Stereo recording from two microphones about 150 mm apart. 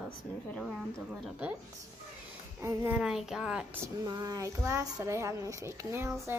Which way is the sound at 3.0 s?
5° right (ahead or behind).